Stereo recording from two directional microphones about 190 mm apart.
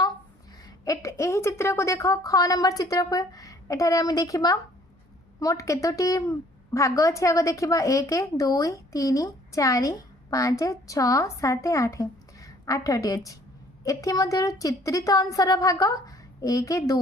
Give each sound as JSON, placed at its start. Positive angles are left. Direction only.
{"t": 0.9, "sound": "a woman's voice", "side_deg": 15}